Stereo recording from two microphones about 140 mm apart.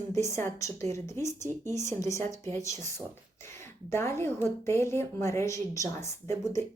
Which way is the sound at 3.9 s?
20° left (ahead or behind).